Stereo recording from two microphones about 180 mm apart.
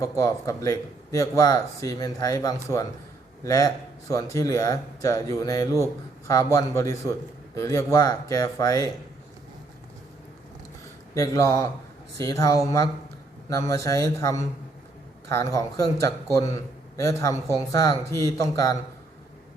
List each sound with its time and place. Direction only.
0.0 s speech: 20° left (ahead or behind)
11.1 s speech: 15° left (ahead or behind)